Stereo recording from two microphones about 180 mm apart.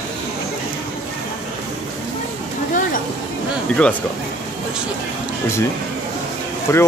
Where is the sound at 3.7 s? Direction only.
5° left (ahead or behind).